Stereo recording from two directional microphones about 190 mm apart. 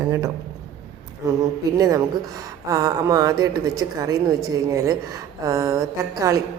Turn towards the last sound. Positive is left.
turn(degrees=-15)  # may be behind; listen again after turning